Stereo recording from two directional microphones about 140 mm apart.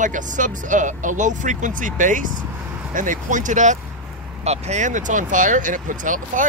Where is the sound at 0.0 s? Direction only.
65° right (ahead or behind).